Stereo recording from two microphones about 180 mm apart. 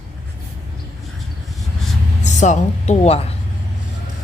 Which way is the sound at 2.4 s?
40° left (ahead or behind).